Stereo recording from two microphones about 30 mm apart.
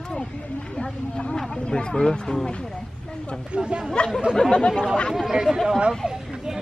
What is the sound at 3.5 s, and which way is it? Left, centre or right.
Speech, right.